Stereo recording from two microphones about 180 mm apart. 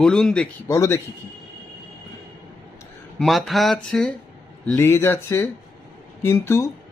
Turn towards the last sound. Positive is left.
turn(degrees=15)  # may be behind; listen again after turning